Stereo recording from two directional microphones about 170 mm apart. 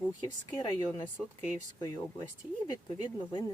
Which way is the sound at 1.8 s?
20° left (ahead or behind).